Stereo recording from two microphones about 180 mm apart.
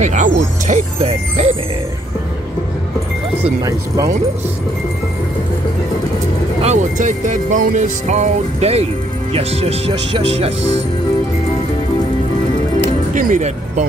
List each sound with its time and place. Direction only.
0.0 s speech: 40° right (ahead or behind)
3.6 s speech: 20° right (ahead or behind)
6.6 s speech: 40° right (ahead or behind)
13.1 s speech: 45° right (ahead or behind)